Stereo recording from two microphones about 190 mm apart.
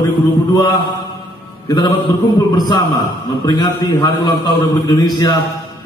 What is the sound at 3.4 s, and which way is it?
A man's voice, 20° left (ahead or behind).